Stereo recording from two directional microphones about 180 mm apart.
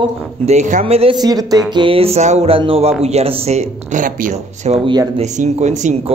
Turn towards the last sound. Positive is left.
turn(degrees=-40)  # may be behind; listen again after turning